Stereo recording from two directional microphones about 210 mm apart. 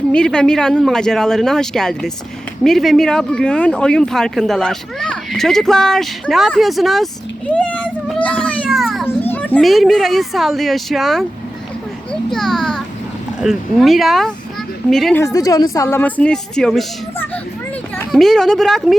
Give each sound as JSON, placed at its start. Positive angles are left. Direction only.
{"t": 0.1, "sound": "a child's voice", "side_deg": 5}
{"t": 9.0, "sound": "a child's voice", "side_deg": 10}
{"t": 15.2, "sound": "a child's voice", "side_deg": 15}